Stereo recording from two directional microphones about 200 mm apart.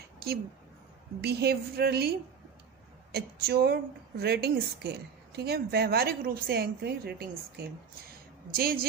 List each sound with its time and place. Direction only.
0.2 s a woman's voice: 50° right (ahead or behind)